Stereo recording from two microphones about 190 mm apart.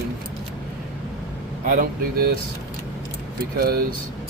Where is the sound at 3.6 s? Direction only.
50° right (ahead or behind).